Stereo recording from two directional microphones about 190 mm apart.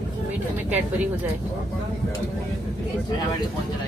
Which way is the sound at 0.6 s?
10° right (ahead or behind).